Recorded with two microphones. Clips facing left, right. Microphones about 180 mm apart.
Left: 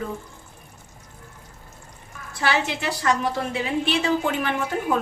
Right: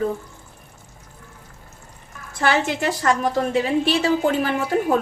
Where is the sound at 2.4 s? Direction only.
45° right (ahead or behind).